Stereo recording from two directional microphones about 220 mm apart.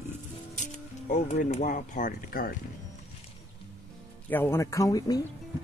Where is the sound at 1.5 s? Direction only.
35° left (ahead or behind).